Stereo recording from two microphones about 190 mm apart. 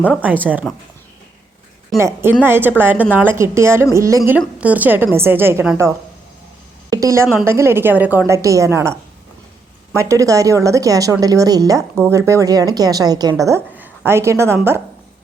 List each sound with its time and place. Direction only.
0.0 s a woman's voice: 10° right (ahead or behind)
2.0 s a woman's voice: 15° right (ahead or behind)
6.9 s a woman's voice: 15° right (ahead or behind)